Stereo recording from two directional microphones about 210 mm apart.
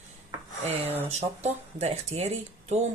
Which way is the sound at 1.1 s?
30° right (ahead or behind).